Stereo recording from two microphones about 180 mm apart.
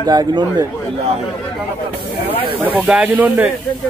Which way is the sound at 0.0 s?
20° right (ahead or behind).